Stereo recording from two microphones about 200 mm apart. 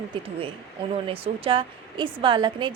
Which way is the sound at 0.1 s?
25° right (ahead or behind).